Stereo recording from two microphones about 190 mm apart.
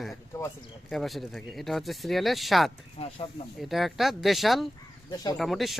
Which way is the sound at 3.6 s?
Centre (ahead or behind).